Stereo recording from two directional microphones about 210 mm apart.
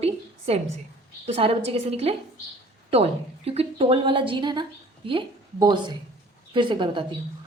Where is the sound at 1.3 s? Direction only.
30° right (ahead or behind).